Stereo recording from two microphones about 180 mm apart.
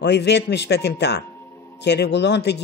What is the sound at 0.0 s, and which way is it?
Speech, 65° left (ahead or behind).